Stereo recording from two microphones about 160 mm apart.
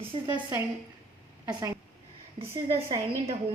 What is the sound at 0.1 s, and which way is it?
Speech, 35° right (ahead or behind).